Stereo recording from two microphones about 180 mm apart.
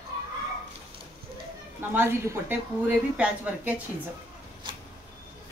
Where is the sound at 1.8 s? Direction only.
10° right (ahead or behind).